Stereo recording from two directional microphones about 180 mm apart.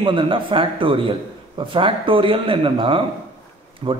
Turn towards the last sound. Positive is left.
turn(degrees=-30)  # may be behind; listen again after turning